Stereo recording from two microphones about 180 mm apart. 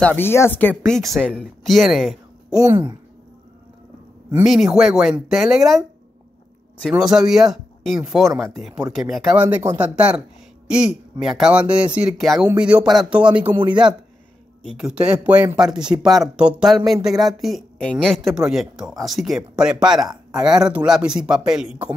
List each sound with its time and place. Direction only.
0.0 s speech: 10° left (ahead or behind)
2.6 s speech: 20° right (ahead or behind)
4.5 s speech: 5° right (ahead or behind)
6.9 s speech: 5° right (ahead or behind)